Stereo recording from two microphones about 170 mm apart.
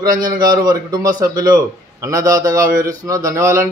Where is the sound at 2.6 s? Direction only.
55° right (ahead or behind).